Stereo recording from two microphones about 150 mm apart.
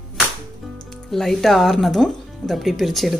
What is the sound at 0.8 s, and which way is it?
Speech, 5° left (ahead or behind).